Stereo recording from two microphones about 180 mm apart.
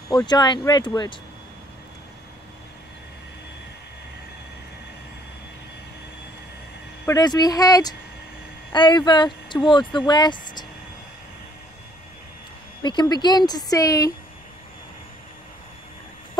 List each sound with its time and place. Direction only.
0.1 s speech: 25° left (ahead or behind)
7.1 s speech: 20° left (ahead or behind)
12.8 s speech: 25° left (ahead or behind)